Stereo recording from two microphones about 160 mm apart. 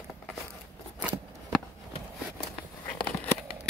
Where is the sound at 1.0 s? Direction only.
5° right (ahead or behind).